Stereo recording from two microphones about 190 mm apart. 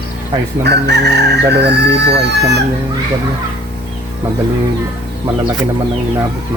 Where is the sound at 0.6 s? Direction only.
60° right (ahead or behind).